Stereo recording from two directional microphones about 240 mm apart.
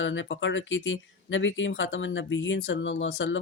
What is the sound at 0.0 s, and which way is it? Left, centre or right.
Speech, left.